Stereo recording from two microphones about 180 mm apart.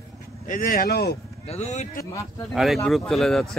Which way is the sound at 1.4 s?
35° left (ahead or behind).